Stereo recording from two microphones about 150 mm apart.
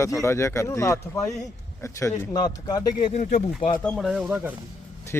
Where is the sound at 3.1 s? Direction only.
55° left (ahead or behind).